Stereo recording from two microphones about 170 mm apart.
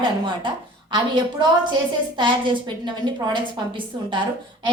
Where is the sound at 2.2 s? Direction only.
30° right (ahead or behind).